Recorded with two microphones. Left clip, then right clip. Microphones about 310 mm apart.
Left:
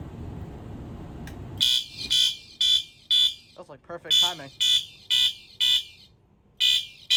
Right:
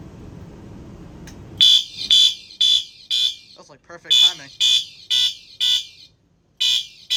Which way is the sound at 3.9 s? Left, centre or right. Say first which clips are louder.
Right 7 dB; centre.